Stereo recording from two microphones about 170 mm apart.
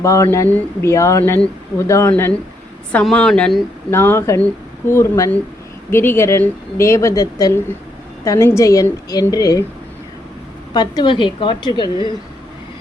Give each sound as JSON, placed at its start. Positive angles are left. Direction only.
{"t": 0.0, "sound": "a woman's voice", "side_deg": 20}
{"t": 10.8, "sound": "a woman's voice", "side_deg": 25}